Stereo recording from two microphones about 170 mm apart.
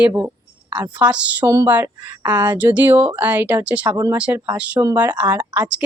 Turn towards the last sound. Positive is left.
turn(degrees=-5)  # may be behind; listen again after turning